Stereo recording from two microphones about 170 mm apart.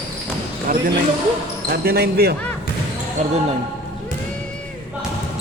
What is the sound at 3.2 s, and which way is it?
Speech, 40° right (ahead or behind).